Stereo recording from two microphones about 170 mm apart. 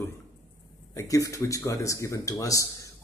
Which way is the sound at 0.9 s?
20° left (ahead or behind).